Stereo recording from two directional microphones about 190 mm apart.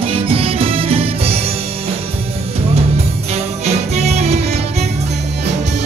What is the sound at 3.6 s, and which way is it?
Music, 35° right (ahead or behind).